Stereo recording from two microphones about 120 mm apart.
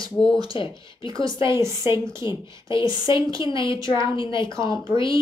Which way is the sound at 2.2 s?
40° left (ahead or behind).